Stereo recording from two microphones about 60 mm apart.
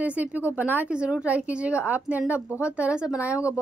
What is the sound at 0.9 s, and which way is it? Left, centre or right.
A woman's voice, centre.